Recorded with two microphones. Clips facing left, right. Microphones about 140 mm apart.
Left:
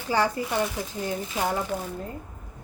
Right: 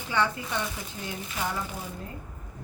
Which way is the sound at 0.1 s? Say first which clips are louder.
Left 4 dB; 35° left (ahead or behind).